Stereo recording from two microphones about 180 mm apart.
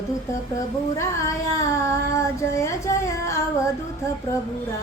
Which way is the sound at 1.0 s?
15° left (ahead or behind).